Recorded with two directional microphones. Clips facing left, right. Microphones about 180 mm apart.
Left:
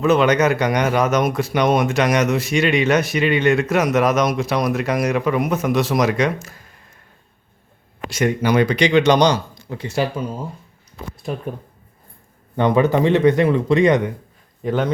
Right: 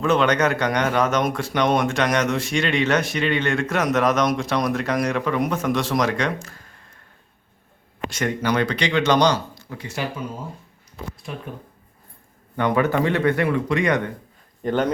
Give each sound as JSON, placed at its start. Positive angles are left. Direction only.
{"t": 0.0, "sound": "speech", "side_deg": 5}
{"t": 8.1, "sound": "speech", "side_deg": 10}
{"t": 11.3, "sound": "speech", "side_deg": 40}
{"t": 12.5, "sound": "speech", "side_deg": 25}
{"t": 14.6, "sound": "speech", "side_deg": 0}